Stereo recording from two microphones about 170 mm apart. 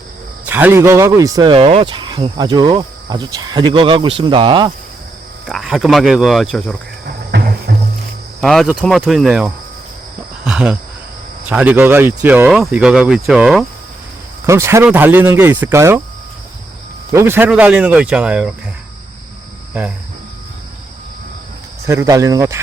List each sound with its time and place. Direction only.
0.4 s speech: 10° right (ahead or behind); by 4.7 s 30° right (ahead or behind)
5.5 s speech: centre (ahead or behind)
7.0 s cricket: 70° right (ahead or behind)
7.7 s music: 90° right
8.4 s speech: centre (ahead or behind)
14.4 s speech: 15° right (ahead or behind)
17.1 s speech: 15° right (ahead or behind)
21.8 s speech: 20° right (ahead or behind)